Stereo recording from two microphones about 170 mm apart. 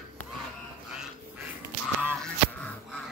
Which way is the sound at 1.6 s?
10° right (ahead or behind).